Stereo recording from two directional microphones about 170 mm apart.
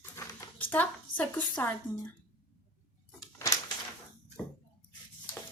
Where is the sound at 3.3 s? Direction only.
20° left (ahead or behind).